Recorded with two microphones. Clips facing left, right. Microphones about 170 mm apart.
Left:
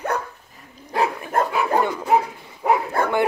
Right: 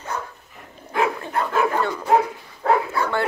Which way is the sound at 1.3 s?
45° left (ahead or behind).